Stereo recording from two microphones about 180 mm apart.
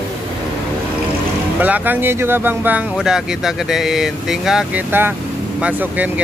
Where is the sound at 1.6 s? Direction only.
10° right (ahead or behind).